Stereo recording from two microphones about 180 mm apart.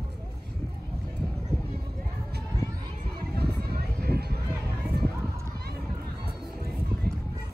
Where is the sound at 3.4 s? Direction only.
60° right (ahead or behind).